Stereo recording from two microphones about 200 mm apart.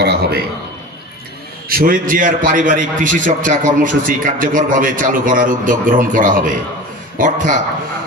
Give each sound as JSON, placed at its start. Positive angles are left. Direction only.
{"t": 0.0, "sound": "a man's voice", "side_deg": -55}
{"t": 1.7, "sound": "a man's voice", "side_deg": -45}